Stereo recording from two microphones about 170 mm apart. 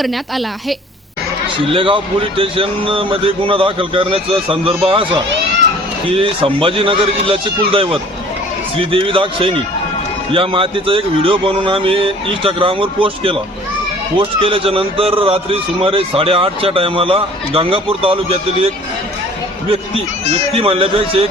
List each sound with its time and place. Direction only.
0.0 s a woman's voice: centre (ahead or behind)
1.5 s a man's voice: 30° right (ahead or behind)
20.4 s a man's voice: 35° right (ahead or behind)